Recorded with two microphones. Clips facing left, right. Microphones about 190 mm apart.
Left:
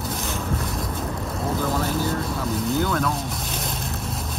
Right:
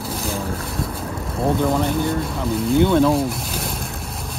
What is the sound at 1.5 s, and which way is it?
Speech, centre (ahead or behind).